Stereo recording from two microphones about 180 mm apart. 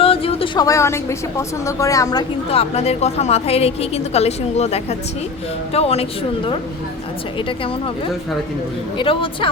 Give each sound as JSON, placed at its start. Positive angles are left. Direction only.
{"t": 0.0, "sound": "a woman's voice", "side_deg": 30}
{"t": 2.5, "sound": "a woman's voice", "side_deg": 35}
{"t": 9.0, "sound": "speech", "side_deg": 30}